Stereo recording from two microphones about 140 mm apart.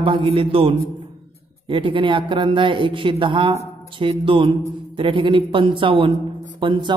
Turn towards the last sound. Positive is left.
turn(degrees=-35)  # may be behind; listen again after turning